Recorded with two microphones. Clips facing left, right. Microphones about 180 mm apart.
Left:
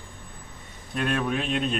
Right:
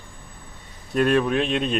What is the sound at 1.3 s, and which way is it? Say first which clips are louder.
Speech: right 4 dB; 70° right (ahead or behind).